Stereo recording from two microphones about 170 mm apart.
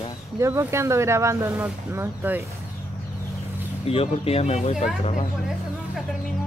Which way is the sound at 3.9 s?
35° left (ahead or behind).